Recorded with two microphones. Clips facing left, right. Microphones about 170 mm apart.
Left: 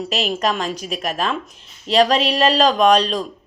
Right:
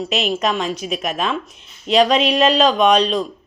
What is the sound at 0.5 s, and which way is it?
Speech, 5° right (ahead or behind).